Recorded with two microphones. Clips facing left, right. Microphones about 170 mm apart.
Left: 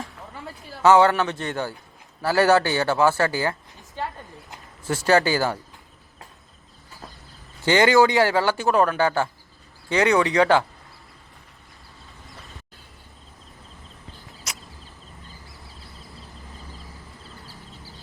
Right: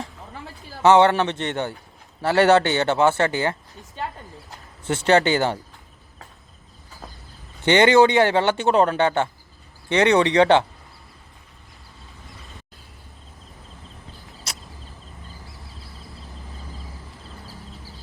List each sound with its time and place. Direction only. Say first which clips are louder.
0.8 s speech: right 1 dB; 25° right (ahead or behind)
5.0 s speech: right 2 dB; 25° right (ahead or behind)
7.6 s speech: right 2 dB; 20° right (ahead or behind)